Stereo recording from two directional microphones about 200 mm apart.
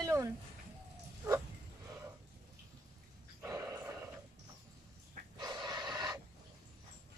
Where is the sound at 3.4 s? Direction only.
15° right (ahead or behind).